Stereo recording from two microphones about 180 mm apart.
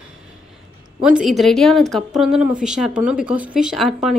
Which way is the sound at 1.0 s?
5° right (ahead or behind).